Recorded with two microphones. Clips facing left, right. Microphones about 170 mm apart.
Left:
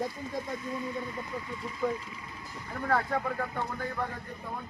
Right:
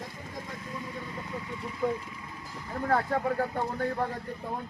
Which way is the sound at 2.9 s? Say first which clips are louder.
Right 2 dB; 35° right (ahead or behind).